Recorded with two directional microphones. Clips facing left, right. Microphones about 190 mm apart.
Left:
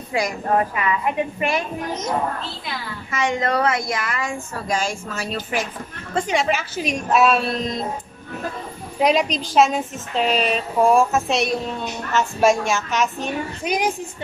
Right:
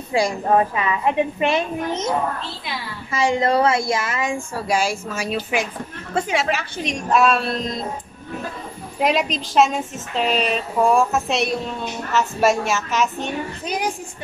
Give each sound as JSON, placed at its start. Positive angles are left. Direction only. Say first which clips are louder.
{"t": 0.1, "sound": "a woman's voice", "louder": "right 3 dB", "side_deg": -30}
{"t": 9.0, "sound": "a woman's voice", "louder": "left 2 dB", "side_deg": 0}